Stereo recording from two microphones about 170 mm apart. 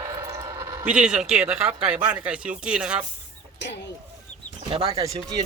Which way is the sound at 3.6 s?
90° left.